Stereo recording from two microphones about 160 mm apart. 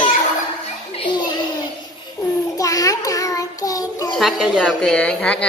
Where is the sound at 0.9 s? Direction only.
30° left (ahead or behind).